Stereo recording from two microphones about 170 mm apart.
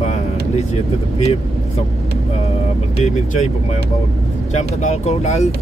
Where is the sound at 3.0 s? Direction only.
40° left (ahead or behind).